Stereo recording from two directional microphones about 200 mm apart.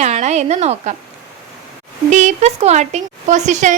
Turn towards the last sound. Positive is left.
turn(degrees=-35)  # may be behind; listen again after turning